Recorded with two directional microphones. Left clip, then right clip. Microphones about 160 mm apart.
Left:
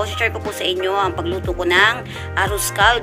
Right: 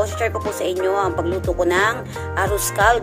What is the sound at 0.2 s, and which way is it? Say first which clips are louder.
Speech: left 1 dB; 35° right (ahead or behind).